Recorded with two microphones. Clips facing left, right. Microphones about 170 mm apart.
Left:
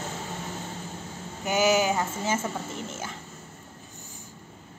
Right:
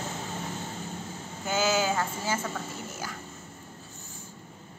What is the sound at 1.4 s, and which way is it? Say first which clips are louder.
A woman's voice: left 4 dB; 15° left (ahead or behind).